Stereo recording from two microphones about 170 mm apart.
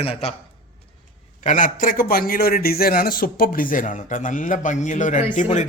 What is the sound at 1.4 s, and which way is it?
A man's voice, 50° left (ahead or behind).